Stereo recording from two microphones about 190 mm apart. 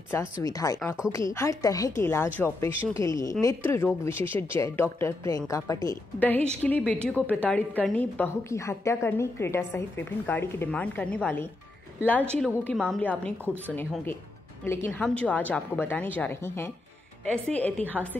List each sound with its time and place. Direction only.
0.1 s a woman's voice: 15° left (ahead or behind)
14.6 s a woman's voice: 10° left (ahead or behind)
17.8 s a woman's voice: 10° right (ahead or behind)